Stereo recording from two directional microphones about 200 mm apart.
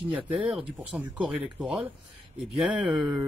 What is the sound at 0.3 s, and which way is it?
Speech, centre (ahead or behind).